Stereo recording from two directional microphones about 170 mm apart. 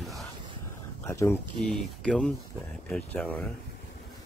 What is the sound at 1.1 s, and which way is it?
Speech, 15° left (ahead or behind).